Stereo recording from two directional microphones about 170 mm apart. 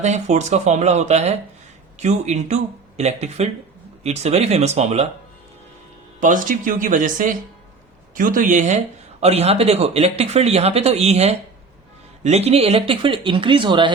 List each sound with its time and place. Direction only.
0.0 s speech: 45° right (ahead or behind)
6.1 s speech: 50° right (ahead or behind); by 13.9 s 30° right (ahead or behind)